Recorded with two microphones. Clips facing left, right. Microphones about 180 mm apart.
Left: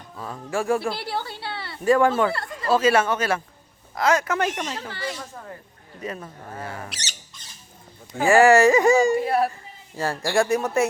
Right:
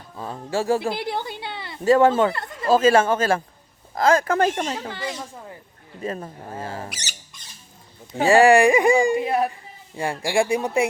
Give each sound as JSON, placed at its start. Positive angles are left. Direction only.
{"t": 0.2, "sound": "speech", "side_deg": -25}
{"t": 0.8, "sound": "speech", "side_deg": -20}
{"t": 4.7, "sound": "speech", "side_deg": -20}
{"t": 6.0, "sound": "speech", "side_deg": -30}
{"t": 8.1, "sound": "speech", "side_deg": -20}